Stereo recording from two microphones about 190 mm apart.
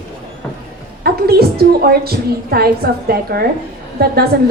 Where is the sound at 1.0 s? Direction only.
55° right (ahead or behind).